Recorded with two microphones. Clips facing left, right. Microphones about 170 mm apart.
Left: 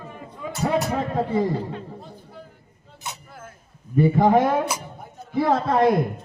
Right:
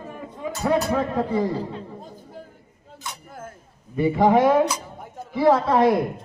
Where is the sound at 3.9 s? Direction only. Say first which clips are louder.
Left 1 dB; 50° left (ahead or behind).